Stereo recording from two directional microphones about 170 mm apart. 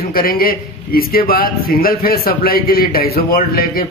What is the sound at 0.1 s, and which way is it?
A man's voice, 60° left (ahead or behind).